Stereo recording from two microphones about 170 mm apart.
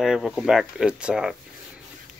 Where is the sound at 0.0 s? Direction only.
5° right (ahead or behind).